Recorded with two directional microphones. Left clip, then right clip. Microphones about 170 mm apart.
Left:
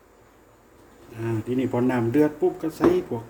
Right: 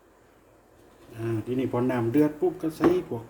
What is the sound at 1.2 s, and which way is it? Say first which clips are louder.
Speech: left 2 dB; centre (ahead or behind).